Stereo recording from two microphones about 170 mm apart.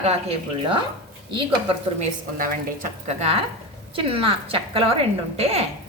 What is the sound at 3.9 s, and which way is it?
A woman's voice, 30° right (ahead or behind).